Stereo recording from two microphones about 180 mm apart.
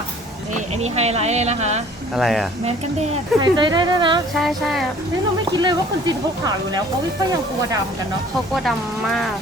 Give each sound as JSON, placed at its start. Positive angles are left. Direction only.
{"t": 0.5, "sound": "speech", "side_deg": -35}
{"t": 2.1, "sound": "speech", "side_deg": 0}
{"t": 3.4, "sound": "speech", "side_deg": -25}
{"t": 4.4, "sound": "speech", "side_deg": 0}
{"t": 5.5, "sound": "speech", "side_deg": -25}